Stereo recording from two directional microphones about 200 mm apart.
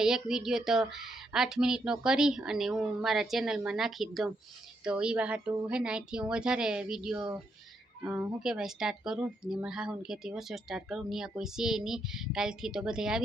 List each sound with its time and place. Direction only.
0.0 s speech: 5° right (ahead or behind)